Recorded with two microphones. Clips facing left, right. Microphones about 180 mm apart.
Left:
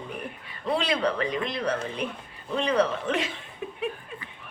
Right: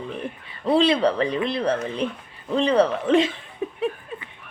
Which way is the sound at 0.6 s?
30° right (ahead or behind).